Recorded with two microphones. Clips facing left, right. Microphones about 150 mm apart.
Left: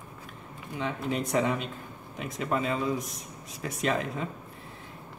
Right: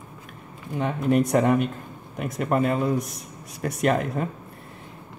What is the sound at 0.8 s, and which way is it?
Speech, 55° right (ahead or behind).